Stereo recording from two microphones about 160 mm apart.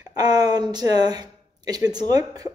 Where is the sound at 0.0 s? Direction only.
25° right (ahead or behind).